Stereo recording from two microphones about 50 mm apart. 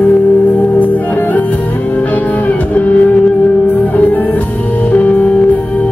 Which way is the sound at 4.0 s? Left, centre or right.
Left.